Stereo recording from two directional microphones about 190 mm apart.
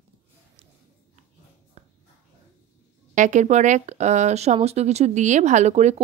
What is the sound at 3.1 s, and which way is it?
Speech, 40° right (ahead or behind).